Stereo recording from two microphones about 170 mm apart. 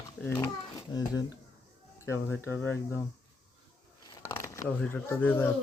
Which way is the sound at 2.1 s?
15° left (ahead or behind).